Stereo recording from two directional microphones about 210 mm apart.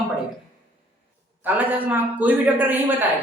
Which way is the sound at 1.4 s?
10° right (ahead or behind).